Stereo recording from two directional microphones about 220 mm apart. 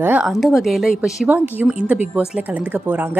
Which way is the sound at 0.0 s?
5° right (ahead or behind).